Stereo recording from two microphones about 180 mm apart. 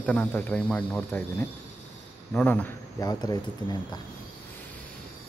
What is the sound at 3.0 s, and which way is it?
Speech, 20° left (ahead or behind).